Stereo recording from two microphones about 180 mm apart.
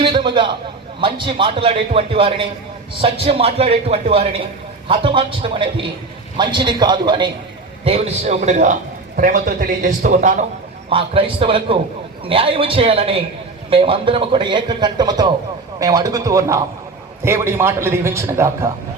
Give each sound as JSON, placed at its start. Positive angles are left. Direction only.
{"t": 0.0, "sound": "a sound", "side_deg": -25}
{"t": 1.0, "sound": "a man's voice", "side_deg": -30}
{"t": 10.8, "sound": "a man's voice", "side_deg": -30}